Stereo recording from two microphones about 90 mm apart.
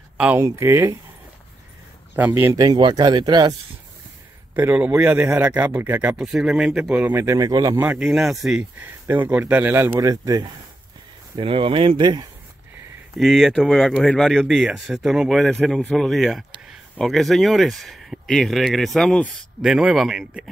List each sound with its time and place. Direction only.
0.4 s speech: 30° right (ahead or behind)
2.1 s speech: 20° right (ahead or behind)
2.5 s speech: 50° right (ahead or behind)
4.6 s speech: 20° right (ahead or behind)
6.1 s speech: 5° right (ahead or behind)
7.2 s speech: 45° right (ahead or behind)
8.0 s speech: centre (ahead or behind)
8.7 s speech: 20° right (ahead or behind)
9.9 s speech: 40° right (ahead or behind)
11.3 s speech: 85° right; by 12.3 s 60° right (ahead or behind)
13.2 s speech: centre (ahead or behind)